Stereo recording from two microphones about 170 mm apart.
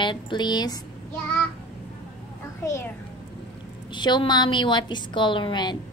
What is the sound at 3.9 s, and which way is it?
A woman's voice, 25° left (ahead or behind).